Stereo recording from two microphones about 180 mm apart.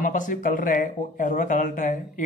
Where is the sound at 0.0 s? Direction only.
45° left (ahead or behind).